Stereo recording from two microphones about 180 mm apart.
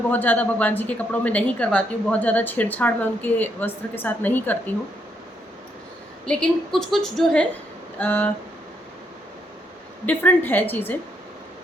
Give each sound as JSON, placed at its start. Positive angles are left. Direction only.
{"t": 0.1, "sound": "a woman's voice", "side_deg": 10}
{"t": 6.2, "sound": "a woman's voice", "side_deg": 0}
{"t": 10.1, "sound": "a woman's voice", "side_deg": 10}